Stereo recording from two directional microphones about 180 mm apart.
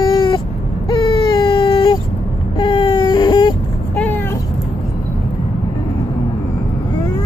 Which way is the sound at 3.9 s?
10° left (ahead or behind).